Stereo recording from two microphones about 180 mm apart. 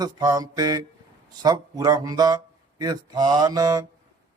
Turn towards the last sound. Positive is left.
turn(degrees=-20)  # may be behind; listen again after turning